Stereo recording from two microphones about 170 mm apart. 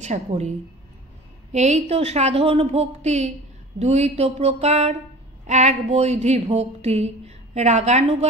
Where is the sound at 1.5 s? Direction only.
40° right (ahead or behind).